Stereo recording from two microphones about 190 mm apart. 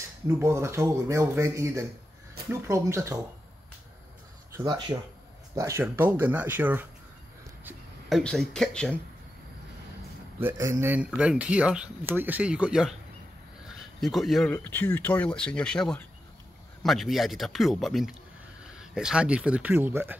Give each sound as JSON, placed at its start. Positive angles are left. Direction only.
{"t": 0.4, "sound": "speech", "side_deg": -15}
{"t": 4.6, "sound": "speech", "side_deg": -20}
{"t": 8.2, "sound": "speech", "side_deg": 5}
{"t": 10.4, "sound": "speech", "side_deg": -15}